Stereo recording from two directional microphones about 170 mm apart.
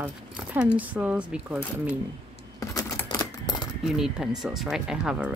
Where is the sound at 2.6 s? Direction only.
20° left (ahead or behind).